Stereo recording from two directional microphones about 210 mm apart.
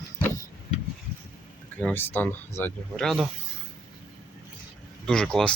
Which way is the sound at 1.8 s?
10° left (ahead or behind).